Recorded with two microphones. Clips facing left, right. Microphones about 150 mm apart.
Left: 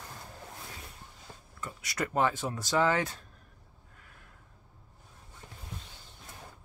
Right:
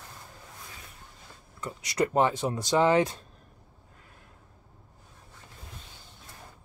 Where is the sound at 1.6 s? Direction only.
20° right (ahead or behind).